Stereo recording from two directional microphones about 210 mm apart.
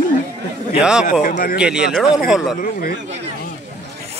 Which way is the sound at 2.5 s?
45° left (ahead or behind).